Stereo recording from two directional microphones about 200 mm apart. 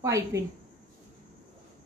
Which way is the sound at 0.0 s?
15° right (ahead or behind).